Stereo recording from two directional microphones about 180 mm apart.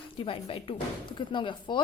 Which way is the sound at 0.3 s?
30° left (ahead or behind).